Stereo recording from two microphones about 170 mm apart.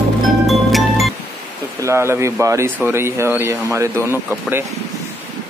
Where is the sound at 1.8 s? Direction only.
15° right (ahead or behind).